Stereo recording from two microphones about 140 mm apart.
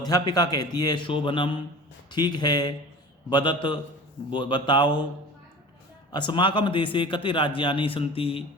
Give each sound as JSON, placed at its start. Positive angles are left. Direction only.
{"t": 0.0, "sound": "a man's voice", "side_deg": 30}
{"t": 6.1, "sound": "a man's voice", "side_deg": 35}